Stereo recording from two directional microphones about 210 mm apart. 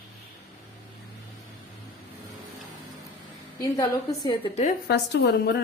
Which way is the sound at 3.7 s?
20° left (ahead or behind).